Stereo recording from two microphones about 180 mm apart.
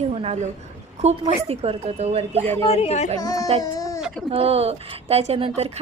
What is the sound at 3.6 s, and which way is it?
Chicken, 20° left (ahead or behind).